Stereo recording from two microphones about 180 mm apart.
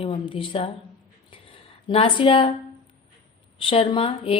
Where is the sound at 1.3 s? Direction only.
30° left (ahead or behind).